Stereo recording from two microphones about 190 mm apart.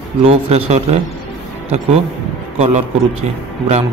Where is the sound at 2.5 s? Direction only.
35° right (ahead or behind).